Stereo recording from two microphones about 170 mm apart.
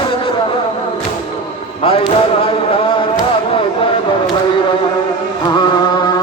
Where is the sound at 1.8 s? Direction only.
35° left (ahead or behind).